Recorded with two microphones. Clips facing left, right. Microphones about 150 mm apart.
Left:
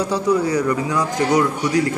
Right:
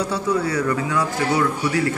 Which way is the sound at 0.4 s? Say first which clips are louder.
Left 3 dB; 15° left (ahead or behind).